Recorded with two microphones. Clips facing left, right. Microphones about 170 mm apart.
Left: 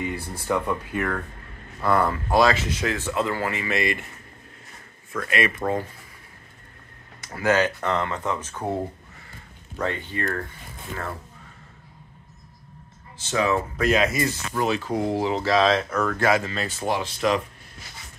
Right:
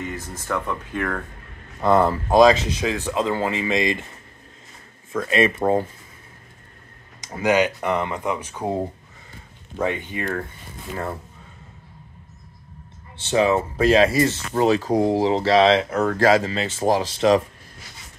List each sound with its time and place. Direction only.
0.0 s speech: 10° left (ahead or behind)
1.8 s speech: 25° right (ahead or behind)
5.1 s speech: 25° right (ahead or behind)
7.2 s speech: 20° right (ahead or behind)
13.2 s speech: 30° right (ahead or behind)